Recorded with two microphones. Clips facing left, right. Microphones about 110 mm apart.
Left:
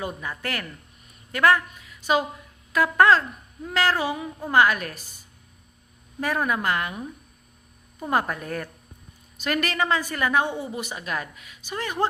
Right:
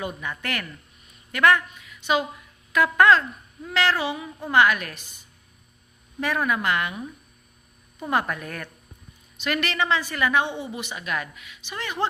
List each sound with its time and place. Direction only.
0.0 s a woman's voice: 35° left (ahead or behind)
6.1 s speech: 40° left (ahead or behind)
8.1 s a woman's voice: 35° left (ahead or behind)